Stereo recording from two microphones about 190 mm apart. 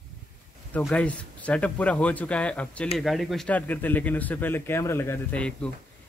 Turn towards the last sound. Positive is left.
turn(degrees=5)  # may be behind; listen again after turning